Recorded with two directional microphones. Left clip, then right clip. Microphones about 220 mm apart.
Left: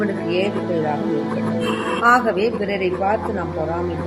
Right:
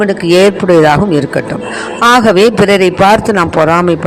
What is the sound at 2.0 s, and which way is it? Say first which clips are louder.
Speech: right 10 dB; 45° right (ahead or behind).